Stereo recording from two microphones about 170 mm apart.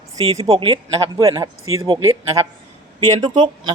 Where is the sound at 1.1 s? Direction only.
20° right (ahead or behind).